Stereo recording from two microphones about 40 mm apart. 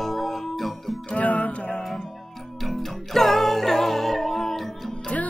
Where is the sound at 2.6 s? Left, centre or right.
Centre.